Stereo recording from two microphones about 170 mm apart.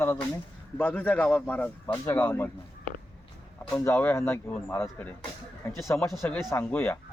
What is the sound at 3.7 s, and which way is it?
Speech, 10° left (ahead or behind).